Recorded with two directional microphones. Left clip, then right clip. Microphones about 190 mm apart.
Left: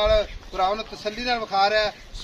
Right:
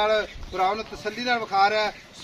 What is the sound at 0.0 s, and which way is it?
Speech, 35° left (ahead or behind).